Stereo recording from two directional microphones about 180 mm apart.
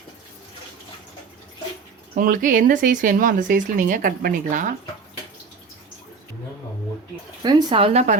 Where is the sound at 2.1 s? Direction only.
50° right (ahead or behind).